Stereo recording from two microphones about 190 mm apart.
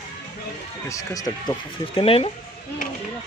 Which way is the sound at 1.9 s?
30° left (ahead or behind).